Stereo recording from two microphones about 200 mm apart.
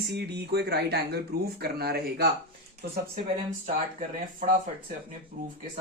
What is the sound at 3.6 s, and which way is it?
Speech, 40° right (ahead or behind).